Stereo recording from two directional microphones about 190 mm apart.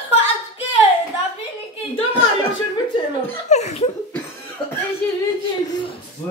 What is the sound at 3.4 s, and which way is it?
Speech, 35° left (ahead or behind).